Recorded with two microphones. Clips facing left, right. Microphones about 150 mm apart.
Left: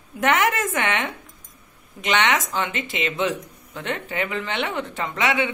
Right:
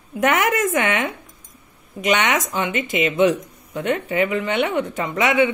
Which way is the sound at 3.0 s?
20° right (ahead or behind).